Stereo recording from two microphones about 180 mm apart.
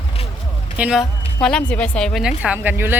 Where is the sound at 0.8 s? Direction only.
5° right (ahead or behind).